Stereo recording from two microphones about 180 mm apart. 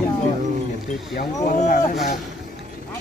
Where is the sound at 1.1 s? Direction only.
50° left (ahead or behind).